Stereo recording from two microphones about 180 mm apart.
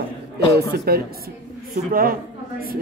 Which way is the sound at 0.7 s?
60° right (ahead or behind).